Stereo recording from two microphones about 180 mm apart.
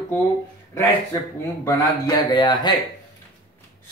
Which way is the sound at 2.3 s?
25° left (ahead or behind).